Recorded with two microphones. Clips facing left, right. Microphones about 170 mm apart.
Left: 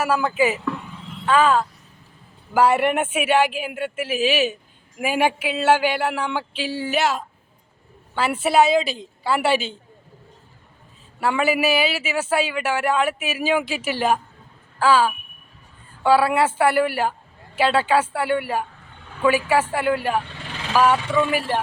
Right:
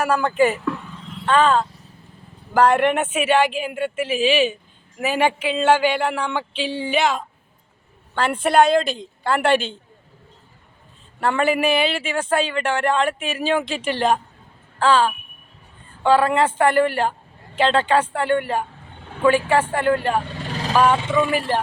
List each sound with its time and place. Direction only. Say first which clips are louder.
0.0 s speech: right 2 dB; 5° left (ahead or behind)
11.2 s speech: right 1 dB; 5° left (ahead or behind)
20.4 s vehicle: right 5 dB; 40° right (ahead or behind)
20.9 s speech: right 1 dB; 20° right (ahead or behind)
21.2 s speech: right 1 dB; 5° left (ahead or behind)